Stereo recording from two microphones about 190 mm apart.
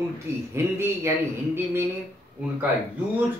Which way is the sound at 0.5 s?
15° right (ahead or behind).